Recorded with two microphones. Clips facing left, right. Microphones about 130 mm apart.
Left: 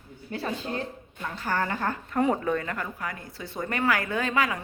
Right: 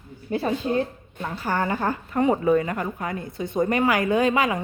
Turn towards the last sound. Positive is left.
turn(degrees=-20)  # may be behind; listen again after turning